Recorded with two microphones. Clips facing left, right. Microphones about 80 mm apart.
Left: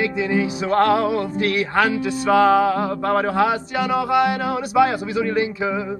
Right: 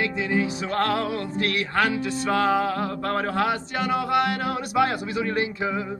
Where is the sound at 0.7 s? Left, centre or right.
Left.